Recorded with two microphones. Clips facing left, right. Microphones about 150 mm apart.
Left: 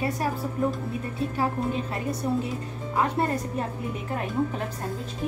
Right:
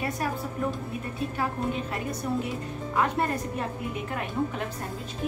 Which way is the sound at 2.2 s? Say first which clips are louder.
Left 3 dB; 25° left (ahead or behind).